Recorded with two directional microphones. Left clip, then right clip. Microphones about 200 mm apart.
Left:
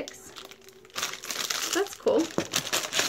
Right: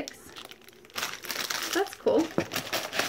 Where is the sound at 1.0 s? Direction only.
Centre (ahead or behind).